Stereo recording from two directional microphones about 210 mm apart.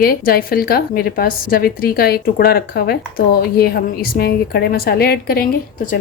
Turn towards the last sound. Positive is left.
turn(degrees=45)  # may be behind; listen again after turning